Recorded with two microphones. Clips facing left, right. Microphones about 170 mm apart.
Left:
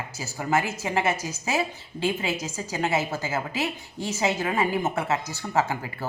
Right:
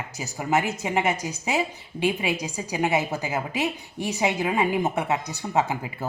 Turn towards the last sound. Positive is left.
turn(degrees=-20)  # may be behind; listen again after turning